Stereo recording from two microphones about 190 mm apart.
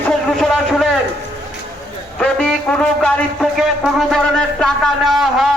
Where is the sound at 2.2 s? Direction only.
5° left (ahead or behind).